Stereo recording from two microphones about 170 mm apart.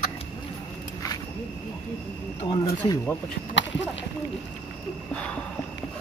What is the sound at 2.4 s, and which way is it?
Speech, 30° left (ahead or behind).